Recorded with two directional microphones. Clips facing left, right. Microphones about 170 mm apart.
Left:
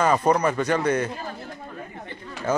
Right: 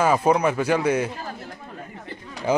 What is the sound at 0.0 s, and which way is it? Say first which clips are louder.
Speech: right 1 dB; 5° right (ahead or behind).